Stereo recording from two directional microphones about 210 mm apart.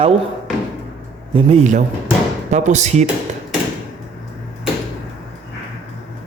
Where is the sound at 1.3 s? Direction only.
30° right (ahead or behind).